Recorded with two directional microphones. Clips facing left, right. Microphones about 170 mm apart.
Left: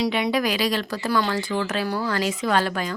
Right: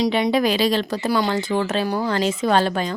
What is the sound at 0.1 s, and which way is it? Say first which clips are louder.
Speech: right 4 dB; 30° right (ahead or behind).